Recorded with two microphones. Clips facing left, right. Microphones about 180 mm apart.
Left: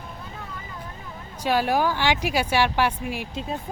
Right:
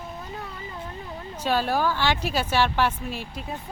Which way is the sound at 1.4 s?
10° left (ahead or behind).